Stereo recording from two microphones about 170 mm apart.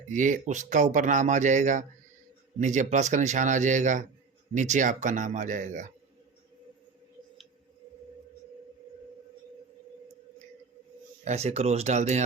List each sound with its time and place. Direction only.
0.1 s a man's voice: 45° right (ahead or behind)
11.3 s speech: 40° right (ahead or behind)